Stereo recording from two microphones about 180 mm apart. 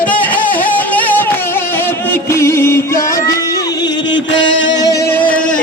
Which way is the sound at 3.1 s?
20° left (ahead or behind).